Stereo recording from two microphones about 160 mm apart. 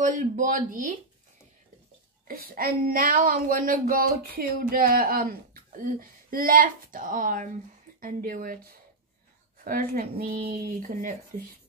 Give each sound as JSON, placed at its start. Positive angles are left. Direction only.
{"t": 0.0, "sound": "speech", "side_deg": -55}
{"t": 2.2, "sound": "speech", "side_deg": -65}
{"t": 9.7, "sound": "speech", "side_deg": -65}